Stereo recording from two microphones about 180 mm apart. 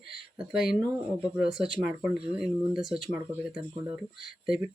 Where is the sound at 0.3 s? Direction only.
5° right (ahead or behind).